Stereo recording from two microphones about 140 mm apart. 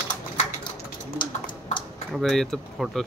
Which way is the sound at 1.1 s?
35° left (ahead or behind).